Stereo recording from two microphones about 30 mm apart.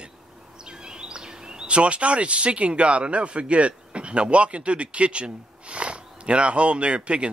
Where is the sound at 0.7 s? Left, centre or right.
Right.